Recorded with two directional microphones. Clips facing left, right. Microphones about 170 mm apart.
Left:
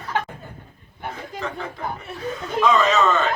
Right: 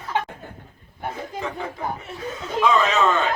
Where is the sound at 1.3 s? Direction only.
15° right (ahead or behind).